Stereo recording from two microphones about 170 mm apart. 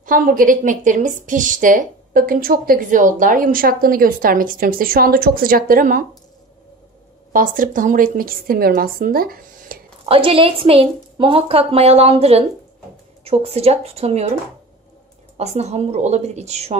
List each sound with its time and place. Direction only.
0.0 s a woman's voice: 55° right (ahead or behind)
7.3 s a woman's voice: 55° right (ahead or behind)
10.0 s a woman's voice: 35° right (ahead or behind)
15.3 s a woman's voice: 40° right (ahead or behind)